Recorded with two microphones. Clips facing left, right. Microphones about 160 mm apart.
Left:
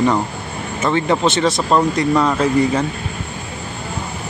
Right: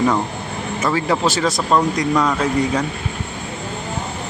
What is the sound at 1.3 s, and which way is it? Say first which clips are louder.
A man's voice: left 2 dB; centre (ahead or behind).